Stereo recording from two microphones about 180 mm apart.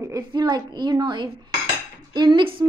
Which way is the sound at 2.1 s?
25° right (ahead or behind).